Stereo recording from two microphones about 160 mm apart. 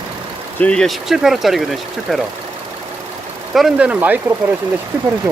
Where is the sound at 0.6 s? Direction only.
5° left (ahead or behind).